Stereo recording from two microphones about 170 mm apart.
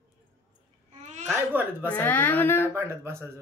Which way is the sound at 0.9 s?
40° right (ahead or behind).